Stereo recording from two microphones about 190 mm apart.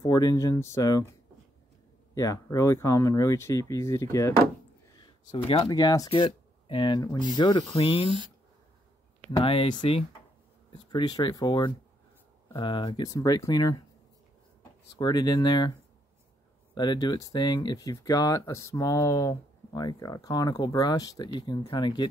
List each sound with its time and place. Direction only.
0.0 s speech: 20° left (ahead or behind)
2.1 s speech: 15° left (ahead or behind)
9.4 s speech: 30° left (ahead or behind)
15.0 s speech: 20° left (ahead or behind)
16.7 s speech: 20° left (ahead or behind)